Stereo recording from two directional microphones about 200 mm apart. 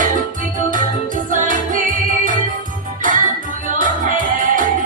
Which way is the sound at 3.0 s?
40° right (ahead or behind).